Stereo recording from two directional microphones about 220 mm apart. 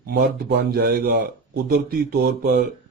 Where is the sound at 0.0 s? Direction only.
45° right (ahead or behind).